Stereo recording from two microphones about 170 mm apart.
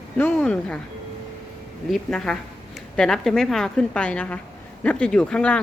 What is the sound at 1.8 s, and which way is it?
A woman's voice, 5° left (ahead or behind).